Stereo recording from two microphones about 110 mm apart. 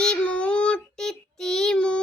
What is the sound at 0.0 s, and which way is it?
Child singing, 10° left (ahead or behind).